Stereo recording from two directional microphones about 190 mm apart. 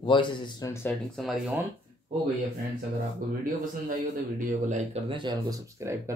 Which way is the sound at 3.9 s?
45° right (ahead or behind).